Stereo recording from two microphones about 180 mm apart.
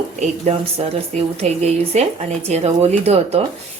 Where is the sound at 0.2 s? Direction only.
35° right (ahead or behind).